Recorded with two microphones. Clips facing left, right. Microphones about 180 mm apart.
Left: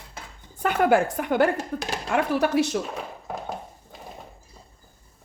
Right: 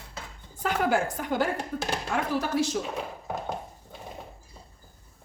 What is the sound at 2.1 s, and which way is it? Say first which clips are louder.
Speech: left 6 dB; 70° left (ahead or behind).